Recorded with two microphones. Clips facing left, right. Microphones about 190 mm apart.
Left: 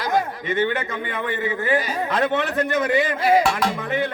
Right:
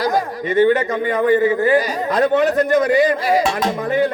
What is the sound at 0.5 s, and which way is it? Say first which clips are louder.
A man's voice: right 9 dB; 40° right (ahead or behind).